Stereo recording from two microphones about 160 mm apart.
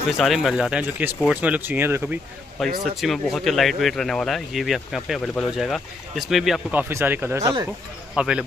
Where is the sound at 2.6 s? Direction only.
Centre (ahead or behind).